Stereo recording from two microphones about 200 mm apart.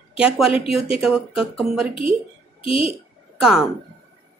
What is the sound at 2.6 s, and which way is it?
Speech, 25° left (ahead or behind).